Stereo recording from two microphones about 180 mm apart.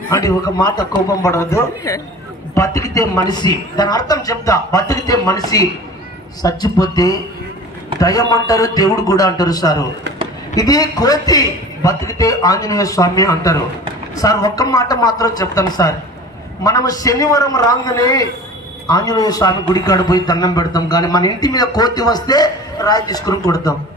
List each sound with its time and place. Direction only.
0.1 s a man's voice: 20° left (ahead or behind)